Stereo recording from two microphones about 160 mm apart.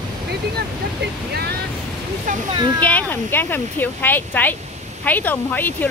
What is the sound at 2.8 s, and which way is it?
Speech, 10° left (ahead or behind).